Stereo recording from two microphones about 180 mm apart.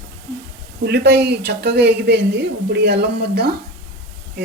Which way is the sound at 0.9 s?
65° right (ahead or behind).